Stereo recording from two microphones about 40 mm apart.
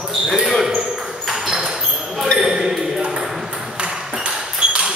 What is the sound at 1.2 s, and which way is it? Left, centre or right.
Ping, centre.